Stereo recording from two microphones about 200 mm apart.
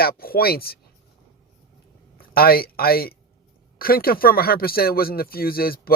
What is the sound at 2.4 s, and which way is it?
Speech, 50° left (ahead or behind).